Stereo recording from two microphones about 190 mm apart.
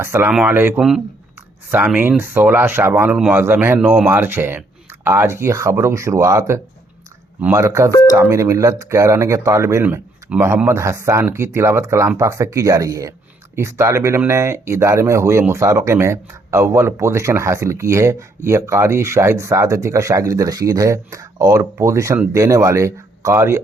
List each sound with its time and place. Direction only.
0.0 s speech: 15° right (ahead or behind)
7.9 s speech: 20° left (ahead or behind)
8.1 s speech: 15° right (ahead or behind)